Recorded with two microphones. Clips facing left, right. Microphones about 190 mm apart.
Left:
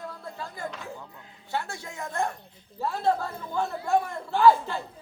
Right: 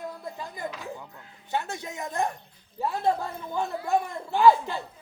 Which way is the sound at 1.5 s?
20° right (ahead or behind).